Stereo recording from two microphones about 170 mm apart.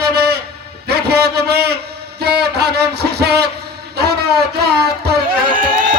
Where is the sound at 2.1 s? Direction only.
70° right (ahead or behind).